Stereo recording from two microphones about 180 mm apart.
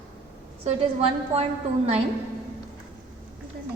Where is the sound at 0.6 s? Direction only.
35° right (ahead or behind).